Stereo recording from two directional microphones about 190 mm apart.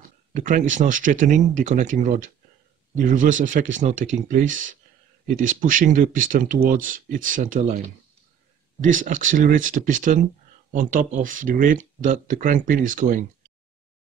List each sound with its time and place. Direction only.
0.3 s speech: 40° right (ahead or behind)
8.8 s speech: 40° right (ahead or behind)